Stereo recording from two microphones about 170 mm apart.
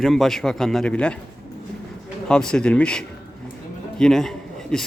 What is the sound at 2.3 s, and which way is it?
A man's voice, 5° left (ahead or behind).